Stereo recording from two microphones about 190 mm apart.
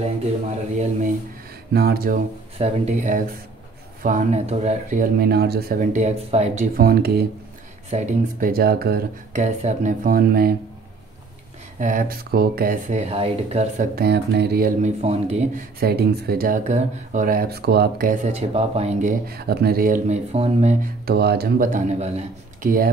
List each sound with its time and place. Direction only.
1.7 s speech: 55° right (ahead or behind)
2.6 s speech: 35° right (ahead or behind)
6.9 s speech: 55° right (ahead or behind)
9.3 s speech: 40° right (ahead or behind)
11.8 s speech: 45° right (ahead or behind)
13.9 s speech: 60° right (ahead or behind)
14.8 s speech: 35° right (ahead or behind)
15.8 s speech: 55° right (ahead or behind)
20.3 s speech: 30° right (ahead or behind)
20.8 s speech: 55° right (ahead or behind); by 22.7 s 35° right (ahead or behind)